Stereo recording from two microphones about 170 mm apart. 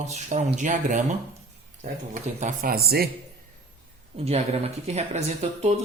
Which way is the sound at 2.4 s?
60° right (ahead or behind).